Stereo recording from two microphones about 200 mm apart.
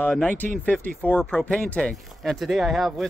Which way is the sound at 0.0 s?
5° left (ahead or behind).